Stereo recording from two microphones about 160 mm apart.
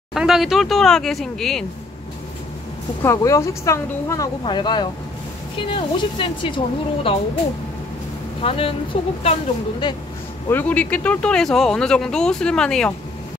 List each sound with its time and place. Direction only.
0.1 s speech: centre (ahead or behind)
3.0 s speech: 20° left (ahead or behind); by 7.2 s 35° left (ahead or behind)
8.4 s speech: 35° left (ahead or behind)
10.5 s speech: 10° left (ahead or behind)